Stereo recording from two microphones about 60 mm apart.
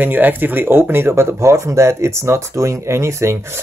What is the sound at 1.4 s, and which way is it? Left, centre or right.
Speech, right.